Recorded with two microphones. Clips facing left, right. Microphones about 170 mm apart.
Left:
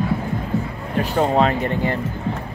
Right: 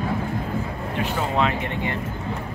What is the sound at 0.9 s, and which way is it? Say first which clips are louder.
Speech: left 6 dB; 40° left (ahead or behind).